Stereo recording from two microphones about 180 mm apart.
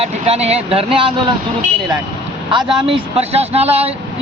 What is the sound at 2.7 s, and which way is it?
Speech, 30° right (ahead or behind).